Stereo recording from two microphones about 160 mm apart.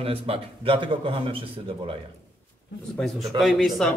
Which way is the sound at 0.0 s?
35° right (ahead or behind).